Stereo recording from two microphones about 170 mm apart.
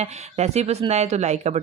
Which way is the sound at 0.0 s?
40° right (ahead or behind).